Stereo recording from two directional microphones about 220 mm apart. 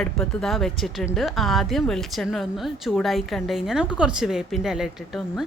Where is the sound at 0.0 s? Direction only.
Centre (ahead or behind).